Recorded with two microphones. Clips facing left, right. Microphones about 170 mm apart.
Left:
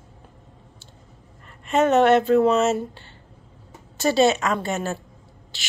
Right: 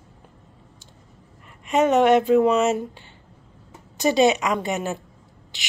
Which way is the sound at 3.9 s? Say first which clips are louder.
Even; 15° right (ahead or behind).